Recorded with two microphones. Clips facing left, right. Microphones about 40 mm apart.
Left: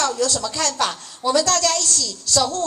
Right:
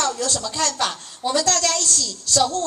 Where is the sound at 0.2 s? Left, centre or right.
Right.